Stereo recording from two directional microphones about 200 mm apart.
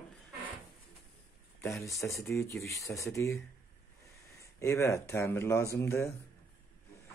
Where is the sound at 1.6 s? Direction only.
15° left (ahead or behind).